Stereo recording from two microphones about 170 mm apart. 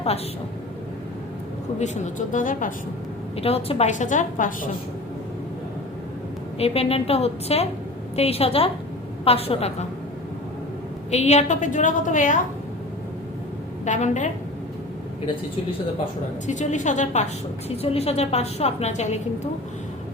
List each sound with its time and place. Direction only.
1.8 s a woman's voice: 45° left (ahead or behind)
3.3 s a woman's voice: 35° left (ahead or behind)
6.6 s a woman's voice: 35° left (ahead or behind)
11.1 s a woman's voice: 40° left (ahead or behind)
13.8 s a woman's voice: 45° left (ahead or behind)
16.5 s a woman's voice: 45° left (ahead or behind)